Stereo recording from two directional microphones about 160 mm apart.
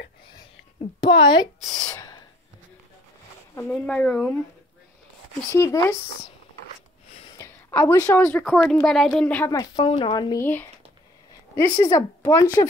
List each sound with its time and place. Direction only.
1.0 s speech: 30° left (ahead or behind)
1.9 s gasp: 20° left (ahead or behind)
3.5 s speech: 10° left (ahead or behind)
5.5 s speech: 15° left (ahead or behind)
7.3 s a woman's voice: 15° left (ahead or behind)
9.5 s speech: 20° left (ahead or behind)
10.4 s speech: 15° left (ahead or behind)